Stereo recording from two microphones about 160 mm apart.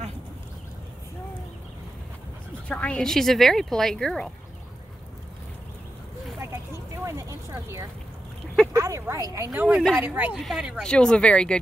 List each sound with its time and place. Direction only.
2.7 s speech: 5° left (ahead or behind)
6.4 s a sound: 15° right (ahead or behind)
8.7 s speech: 20° right (ahead or behind); by 11.5 s 5° left (ahead or behind)